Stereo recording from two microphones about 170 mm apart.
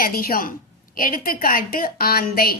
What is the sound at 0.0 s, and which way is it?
A woman's voice, 60° left (ahead or behind).